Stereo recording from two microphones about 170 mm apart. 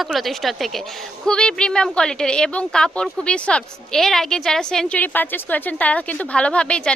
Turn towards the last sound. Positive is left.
turn(degrees=5)  # may be behind; listen again after turning